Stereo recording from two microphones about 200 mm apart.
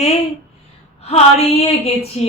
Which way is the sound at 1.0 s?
30° left (ahead or behind).